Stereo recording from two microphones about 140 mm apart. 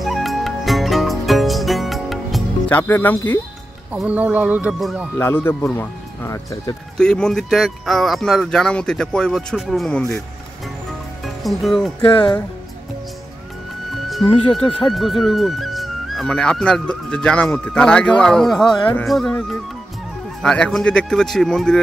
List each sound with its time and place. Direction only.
0.0 s music: centre (ahead or behind)
2.7 s speech: 15° left (ahead or behind)
3.9 s speech: 10° right (ahead or behind)
5.1 s speech: 15° left (ahead or behind)
7.0 s speech: 5° left (ahead or behind)
11.2 s speech: centre (ahead or behind)
14.5 s speech: 5° left (ahead or behind)